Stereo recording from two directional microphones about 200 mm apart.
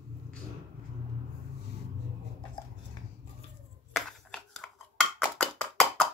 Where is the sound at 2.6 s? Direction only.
25° left (ahead or behind).